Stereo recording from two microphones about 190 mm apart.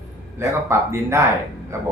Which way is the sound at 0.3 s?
15° right (ahead or behind).